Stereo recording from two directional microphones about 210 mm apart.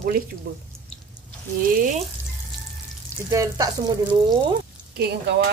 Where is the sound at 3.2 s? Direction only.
15° right (ahead or behind).